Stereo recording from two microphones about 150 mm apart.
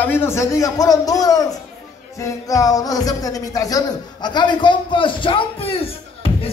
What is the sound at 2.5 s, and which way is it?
A man's voice, 25° left (ahead or behind).